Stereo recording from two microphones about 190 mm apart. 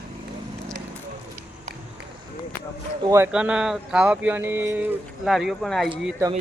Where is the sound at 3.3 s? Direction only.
5° right (ahead or behind).